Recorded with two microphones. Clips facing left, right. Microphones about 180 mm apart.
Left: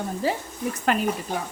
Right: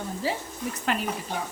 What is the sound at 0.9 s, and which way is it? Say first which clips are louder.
Speech: left 4 dB; 45° left (ahead or behind).